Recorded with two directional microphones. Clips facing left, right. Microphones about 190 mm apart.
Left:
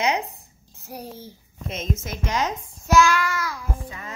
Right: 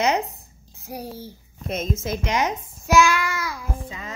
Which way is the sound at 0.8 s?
10° right (ahead or behind).